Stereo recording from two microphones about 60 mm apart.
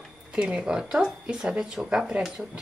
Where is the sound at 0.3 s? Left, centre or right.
Centre.